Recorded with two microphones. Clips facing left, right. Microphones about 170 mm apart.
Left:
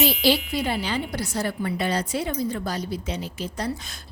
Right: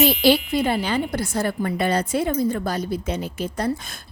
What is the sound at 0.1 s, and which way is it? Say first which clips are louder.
A woman's voice: right 4 dB; 55° right (ahead or behind).